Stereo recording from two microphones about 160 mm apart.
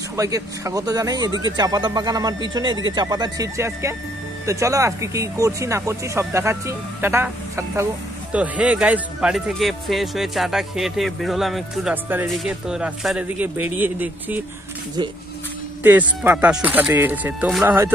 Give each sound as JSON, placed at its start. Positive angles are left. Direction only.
{"t": 0.1, "sound": "speech", "side_deg": -20}
{"t": 15.8, "sound": "speech", "side_deg": -10}